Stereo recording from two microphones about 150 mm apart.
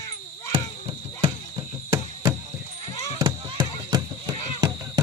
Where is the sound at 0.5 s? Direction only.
35° right (ahead or behind).